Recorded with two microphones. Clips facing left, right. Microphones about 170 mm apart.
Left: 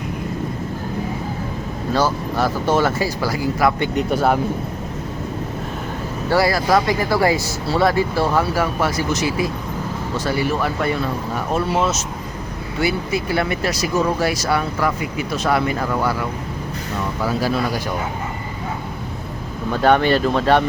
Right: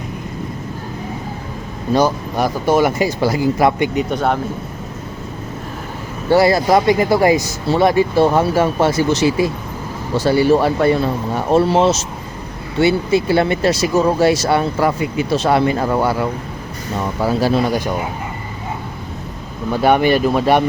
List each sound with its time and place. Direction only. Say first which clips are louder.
1.9 s speech: right 4 dB; 15° right (ahead or behind)
3.9 s speech: even; 5° left (ahead or behind)
6.3 s speech: right 4 dB; 25° right (ahead or behind)
17.4 s speech: right 6 dB; 25° right (ahead or behind)
19.7 s speech: right 2 dB; 10° right (ahead or behind)